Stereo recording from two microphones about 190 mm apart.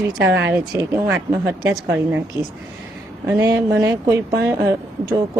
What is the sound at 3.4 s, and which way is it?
Speech, 15° right (ahead or behind).